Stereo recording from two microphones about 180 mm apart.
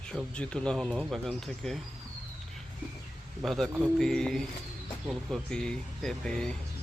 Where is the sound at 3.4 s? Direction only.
Centre (ahead or behind).